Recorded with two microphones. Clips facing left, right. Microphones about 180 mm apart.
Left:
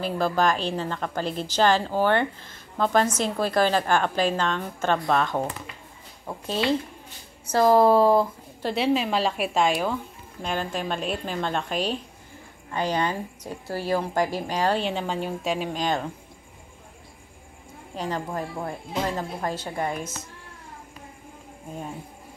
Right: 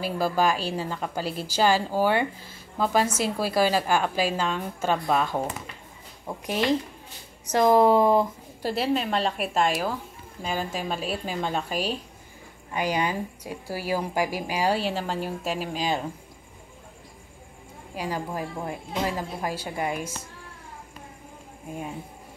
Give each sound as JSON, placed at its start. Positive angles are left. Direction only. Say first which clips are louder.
{"t": 0.0, "sound": "a woman's voice", "louder": "left 1 dB", "side_deg": -5}
{"t": 6.4, "sound": "a woman's voice", "louder": "even", "side_deg": -15}
{"t": 8.7, "sound": "a woman's voice", "louder": "left 2 dB", "side_deg": 0}
{"t": 17.9, "sound": "a woman's voice", "louder": "left 1 dB", "side_deg": -10}